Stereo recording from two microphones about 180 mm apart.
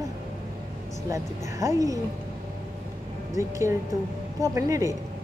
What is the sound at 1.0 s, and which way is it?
Speech, 20° right (ahead or behind).